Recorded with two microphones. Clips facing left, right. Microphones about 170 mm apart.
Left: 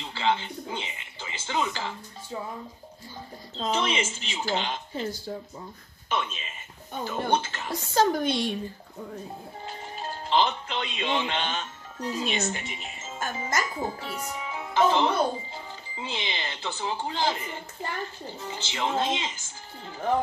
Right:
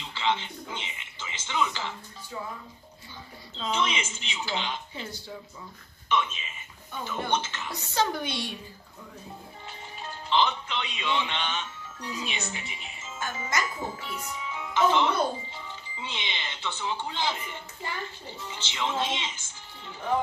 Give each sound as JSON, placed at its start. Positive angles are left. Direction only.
{"t": 0.1, "sound": "speech", "side_deg": 40}
{"t": 3.5, "sound": "speech", "side_deg": 40}
{"t": 6.9, "sound": "a woman's voice", "side_deg": 40}
{"t": 9.7, "sound": "speech", "side_deg": 40}